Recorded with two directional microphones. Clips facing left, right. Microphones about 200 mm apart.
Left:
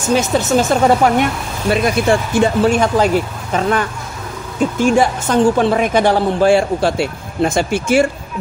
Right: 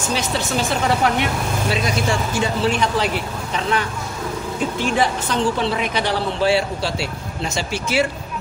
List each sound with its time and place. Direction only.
0.1 s a woman's voice: 50° left (ahead or behind)